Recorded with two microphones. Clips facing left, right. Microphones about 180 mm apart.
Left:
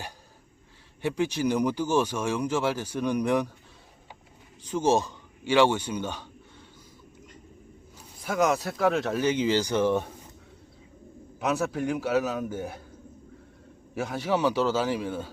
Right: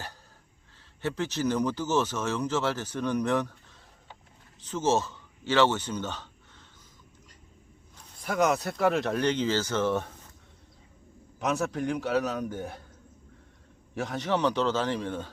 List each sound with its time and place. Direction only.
1.0 s speech: 15° left (ahead or behind)
4.6 s speech: 15° left (ahead or behind)
7.9 s speech: centre (ahead or behind)
11.3 s a man's voice: 5° left (ahead or behind)
13.9 s speech: 5° left (ahead or behind)